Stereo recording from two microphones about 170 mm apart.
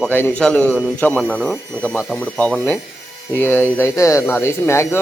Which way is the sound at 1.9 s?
5° left (ahead or behind).